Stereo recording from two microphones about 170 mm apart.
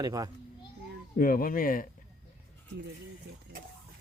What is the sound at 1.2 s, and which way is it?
Speech, 55° left (ahead or behind).